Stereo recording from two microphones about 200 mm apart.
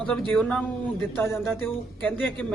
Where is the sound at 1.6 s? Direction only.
10° left (ahead or behind).